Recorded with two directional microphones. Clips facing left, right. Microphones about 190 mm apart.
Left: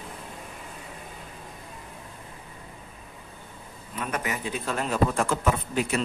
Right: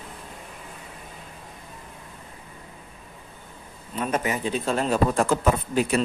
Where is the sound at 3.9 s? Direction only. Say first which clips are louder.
Right 5 dB; 25° right (ahead or behind).